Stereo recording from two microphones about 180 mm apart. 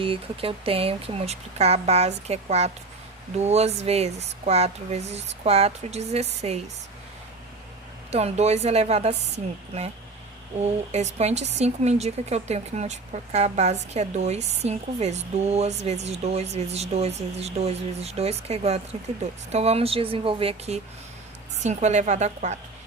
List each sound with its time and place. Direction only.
0.0 s speech: 30° right (ahead or behind)
8.1 s speech: 35° right (ahead or behind)